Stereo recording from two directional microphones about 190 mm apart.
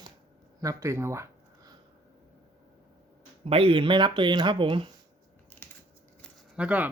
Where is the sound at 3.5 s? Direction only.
30° right (ahead or behind).